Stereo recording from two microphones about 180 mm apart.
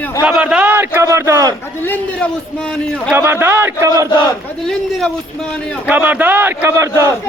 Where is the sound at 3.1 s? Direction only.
10° right (ahead or behind).